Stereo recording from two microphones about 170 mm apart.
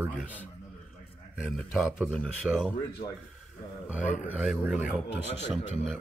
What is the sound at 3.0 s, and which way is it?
Speech, 60° left (ahead or behind).